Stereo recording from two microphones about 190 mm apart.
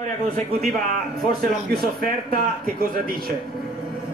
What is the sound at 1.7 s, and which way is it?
Speech, 55° right (ahead or behind).